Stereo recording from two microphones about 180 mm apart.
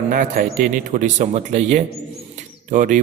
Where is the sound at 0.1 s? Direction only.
45° right (ahead or behind).